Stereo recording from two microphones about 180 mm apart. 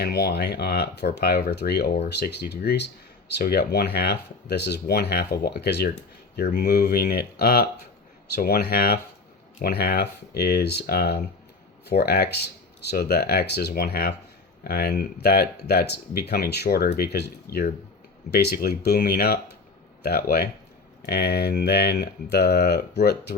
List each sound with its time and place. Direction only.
0.0 s speech: 65° left (ahead or behind)